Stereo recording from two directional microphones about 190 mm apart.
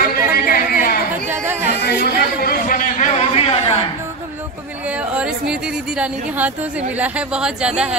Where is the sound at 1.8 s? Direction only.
60° left (ahead or behind).